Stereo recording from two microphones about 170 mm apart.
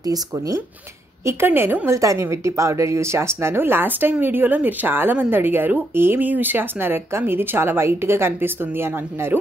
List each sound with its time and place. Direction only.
0.0 s a woman's voice: 20° right (ahead or behind)